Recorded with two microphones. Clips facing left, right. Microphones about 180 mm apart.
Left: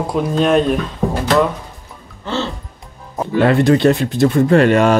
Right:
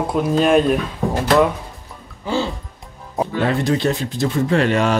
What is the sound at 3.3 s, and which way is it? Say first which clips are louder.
Speech: left 8 dB; 65° left (ahead or behind).